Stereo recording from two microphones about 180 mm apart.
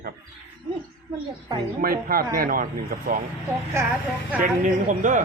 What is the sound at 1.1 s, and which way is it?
Speech, 30° right (ahead or behind).